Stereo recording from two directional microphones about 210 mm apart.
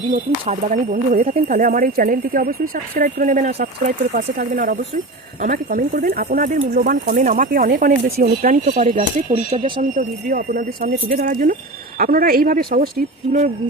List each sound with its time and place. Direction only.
0.1 s speech: 40° right (ahead or behind)